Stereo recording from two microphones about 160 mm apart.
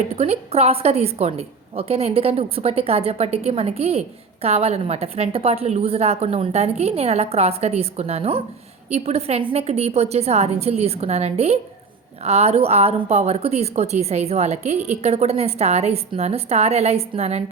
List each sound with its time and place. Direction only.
0.1 s a woman's voice: 40° right (ahead or behind)